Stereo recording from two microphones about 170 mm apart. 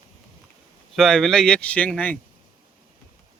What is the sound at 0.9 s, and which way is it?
Speech, centre (ahead or behind).